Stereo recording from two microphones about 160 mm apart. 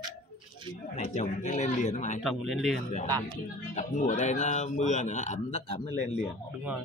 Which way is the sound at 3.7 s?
55° left (ahead or behind).